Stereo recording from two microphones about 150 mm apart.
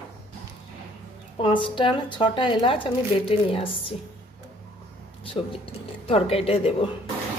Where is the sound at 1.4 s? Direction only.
35° left (ahead or behind).